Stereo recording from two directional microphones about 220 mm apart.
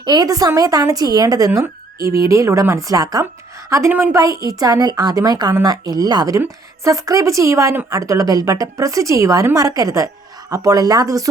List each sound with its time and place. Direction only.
0.0 s speech: 20° right (ahead or behind)
2.0 s speech: 40° right (ahead or behind)
2.2 s speech: 15° right (ahead or behind)